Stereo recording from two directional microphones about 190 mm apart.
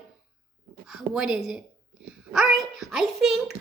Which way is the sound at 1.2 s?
Centre (ahead or behind).